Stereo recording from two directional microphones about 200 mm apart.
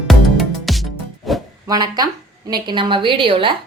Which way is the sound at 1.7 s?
20° right (ahead or behind).